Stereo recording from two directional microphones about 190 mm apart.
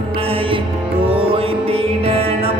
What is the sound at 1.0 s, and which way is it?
Music, 30° right (ahead or behind).